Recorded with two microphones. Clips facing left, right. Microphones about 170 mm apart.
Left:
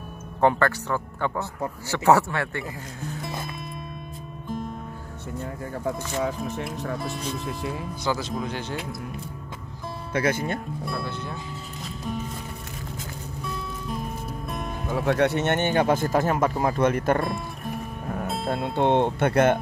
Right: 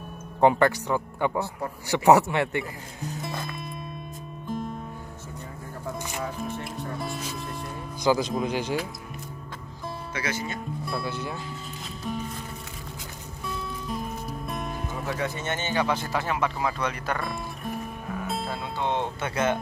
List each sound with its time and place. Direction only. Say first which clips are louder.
0.4 s speech: right 1 dB; 15° right (ahead or behind)
3.2 s music: right 1 dB; centre (ahead or behind)
7.0 s speech: left 2 dB; centre (ahead or behind)
8.0 s speech: right 5 dB; 15° right (ahead or behind)
10.1 s speech: left 8 dB; 55° left (ahead or behind)
10.9 s speech: right 1 dB; 5° right (ahead or behind)
13.5 s music: right 1 dB; centre (ahead or behind)
14.9 s speech: left 11 dB; 75° left (ahead or behind); by 17.2 s 50° left (ahead or behind)
17.2 s music: left 4 dB; centre (ahead or behind)
18.5 s speech: left 10 dB; 60° left (ahead or behind)